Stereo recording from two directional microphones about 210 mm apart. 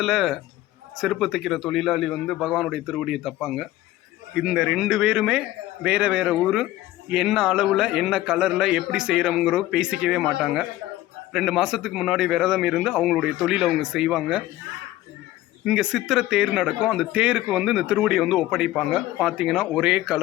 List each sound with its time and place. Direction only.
0.0 s a man's voice: centre (ahead or behind)
15.6 s a man's voice: 5° right (ahead or behind)